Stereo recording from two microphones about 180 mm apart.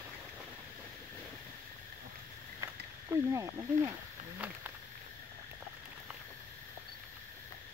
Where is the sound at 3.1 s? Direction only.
15° right (ahead or behind).